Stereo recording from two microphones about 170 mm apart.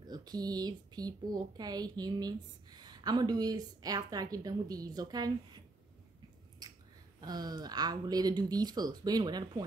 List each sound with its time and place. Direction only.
0.1 s speech: 25° right (ahead or behind)
7.2 s speech: 25° right (ahead or behind)